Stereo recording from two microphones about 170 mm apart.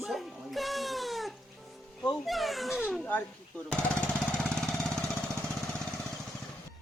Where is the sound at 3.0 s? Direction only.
5° left (ahead or behind).